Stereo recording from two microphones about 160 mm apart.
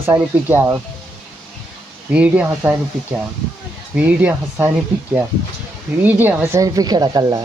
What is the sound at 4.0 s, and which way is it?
Speech, 10° right (ahead or behind).